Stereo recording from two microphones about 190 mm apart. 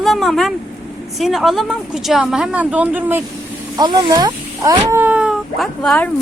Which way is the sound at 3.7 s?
20° right (ahead or behind).